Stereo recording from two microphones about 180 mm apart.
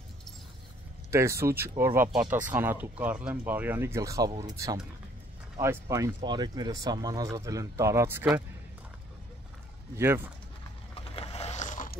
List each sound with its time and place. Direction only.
1.1 s speech: 15° right (ahead or behind)
9.9 s speech: 10° right (ahead or behind)
11.1 s boat: 35° left (ahead or behind)